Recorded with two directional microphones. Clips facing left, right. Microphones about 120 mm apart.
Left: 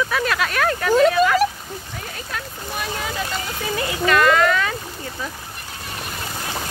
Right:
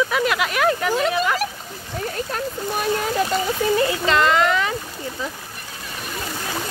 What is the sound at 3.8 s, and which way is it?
Speech, 25° right (ahead or behind).